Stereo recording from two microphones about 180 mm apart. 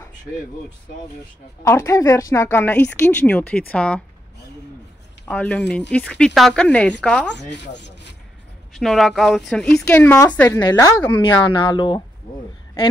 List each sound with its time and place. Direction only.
1.6 s speech: 15° left (ahead or behind)
5.3 s speech: 5° left (ahead or behind)
7.3 s speech: 75° left (ahead or behind)
8.7 s speech: centre (ahead or behind); by 12.0 s 25° left (ahead or behind)